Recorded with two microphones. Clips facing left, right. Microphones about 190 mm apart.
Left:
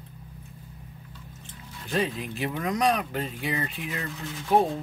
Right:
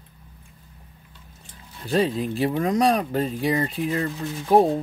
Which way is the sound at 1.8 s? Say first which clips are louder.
Right 6 dB; 35° right (ahead or behind).